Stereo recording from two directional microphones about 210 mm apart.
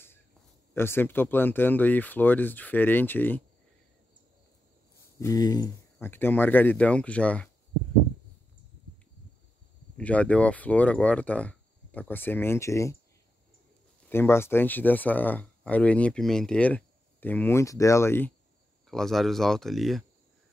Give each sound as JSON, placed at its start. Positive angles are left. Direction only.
{"t": 0.7, "sound": "speech", "side_deg": 10}
{"t": 5.2, "sound": "speech", "side_deg": 15}
{"t": 9.9, "sound": "speech", "side_deg": 5}
{"t": 14.0, "sound": "speech", "side_deg": 10}